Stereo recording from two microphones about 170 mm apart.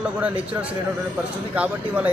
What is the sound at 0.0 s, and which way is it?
A man's voice, 10° right (ahead or behind).